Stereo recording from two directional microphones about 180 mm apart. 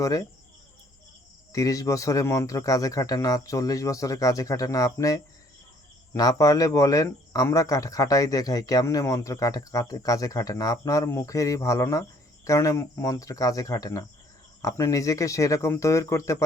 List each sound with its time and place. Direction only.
0.0 s speech: 20° left (ahead or behind)
1.5 s speech: 20° left (ahead or behind)